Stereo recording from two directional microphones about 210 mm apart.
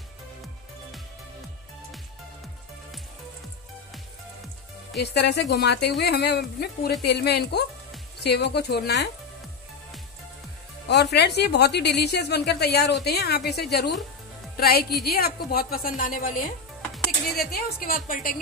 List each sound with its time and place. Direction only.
5.0 s a woman's voice: 50° left (ahead or behind)
10.9 s a woman's voice: 55° left (ahead or behind)